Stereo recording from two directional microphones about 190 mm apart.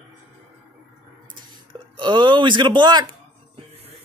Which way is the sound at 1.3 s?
25° right (ahead or behind).